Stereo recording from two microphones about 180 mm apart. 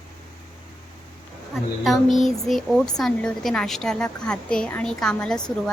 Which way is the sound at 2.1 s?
Centre (ahead or behind).